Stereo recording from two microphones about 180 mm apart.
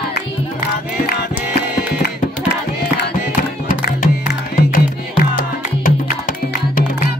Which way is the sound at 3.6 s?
60° left (ahead or behind).